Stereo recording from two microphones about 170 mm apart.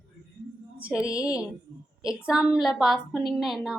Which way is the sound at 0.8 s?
5° right (ahead or behind).